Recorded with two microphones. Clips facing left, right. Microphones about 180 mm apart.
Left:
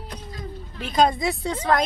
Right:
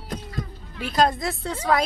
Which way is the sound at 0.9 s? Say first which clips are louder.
Left 2 dB; 5° right (ahead or behind).